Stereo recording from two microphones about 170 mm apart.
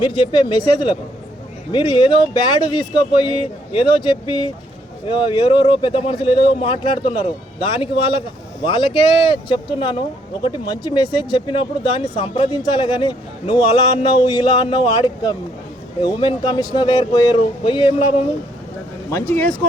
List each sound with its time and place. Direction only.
0.0 s a man's voice: 30° left (ahead or behind)
19.1 s speech: 15° left (ahead or behind)